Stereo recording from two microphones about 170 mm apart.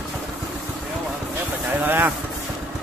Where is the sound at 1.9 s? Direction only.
10° right (ahead or behind).